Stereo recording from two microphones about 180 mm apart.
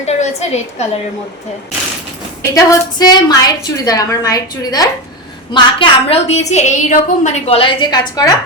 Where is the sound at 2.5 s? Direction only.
20° left (ahead or behind).